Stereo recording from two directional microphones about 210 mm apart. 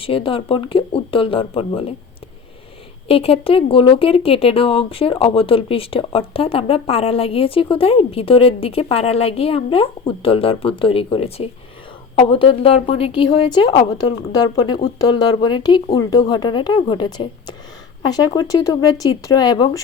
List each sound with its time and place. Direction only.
0.0 s speech: 25° left (ahead or behind)
3.1 s speech: 25° left (ahead or behind)